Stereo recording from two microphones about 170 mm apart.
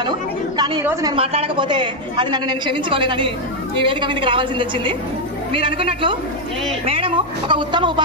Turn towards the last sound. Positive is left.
turn(degrees=-30)  # may be behind; listen again after turning